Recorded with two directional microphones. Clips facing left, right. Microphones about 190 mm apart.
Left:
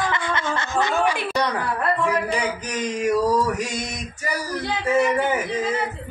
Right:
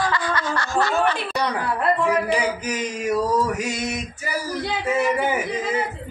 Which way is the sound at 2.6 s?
5° right (ahead or behind).